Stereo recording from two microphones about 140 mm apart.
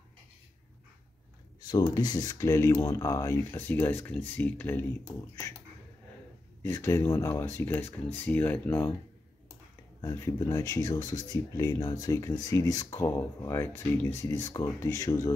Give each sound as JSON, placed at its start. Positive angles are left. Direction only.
{"t": 1.6, "sound": "speech", "side_deg": 30}
{"t": 6.6, "sound": "speech", "side_deg": 20}
{"t": 10.0, "sound": "speech", "side_deg": 20}